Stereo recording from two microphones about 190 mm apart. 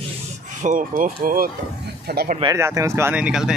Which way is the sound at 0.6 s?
45° right (ahead or behind).